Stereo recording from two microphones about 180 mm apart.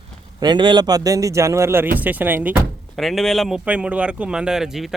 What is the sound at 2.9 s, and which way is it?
Speech, centre (ahead or behind).